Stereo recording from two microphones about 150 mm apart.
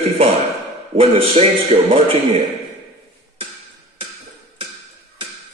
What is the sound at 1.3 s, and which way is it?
Speech, 45° right (ahead or behind).